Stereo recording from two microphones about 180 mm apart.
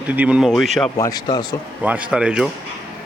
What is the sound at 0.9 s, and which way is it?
Speech, 20° left (ahead or behind).